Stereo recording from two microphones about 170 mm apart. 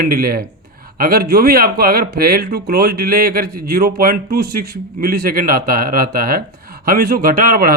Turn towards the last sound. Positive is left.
turn(degrees=-60)  # may be behind; listen again after turning